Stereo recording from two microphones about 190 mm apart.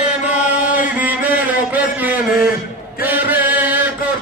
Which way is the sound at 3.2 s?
10° right (ahead or behind).